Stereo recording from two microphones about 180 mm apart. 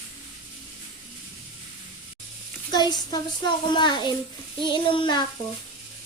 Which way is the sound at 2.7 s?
25° left (ahead or behind).